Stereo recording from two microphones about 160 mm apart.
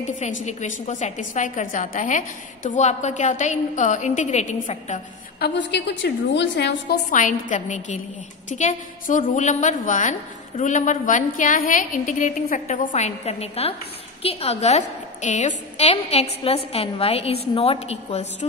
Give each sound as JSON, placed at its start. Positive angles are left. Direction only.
{"t": 0.0, "sound": "a woman's voice", "side_deg": 50}
{"t": 5.4, "sound": "a woman's voice", "side_deg": 90}
{"t": 7.1, "sound": "a woman's voice", "side_deg": 55}